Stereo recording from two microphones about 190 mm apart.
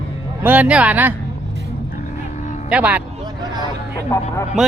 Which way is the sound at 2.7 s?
5° right (ahead or behind).